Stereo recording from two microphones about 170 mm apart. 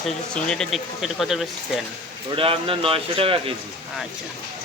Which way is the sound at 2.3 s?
30° right (ahead or behind).